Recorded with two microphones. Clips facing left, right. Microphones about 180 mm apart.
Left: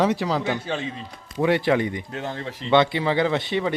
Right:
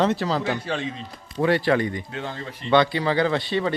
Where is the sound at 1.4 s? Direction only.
20° left (ahead or behind).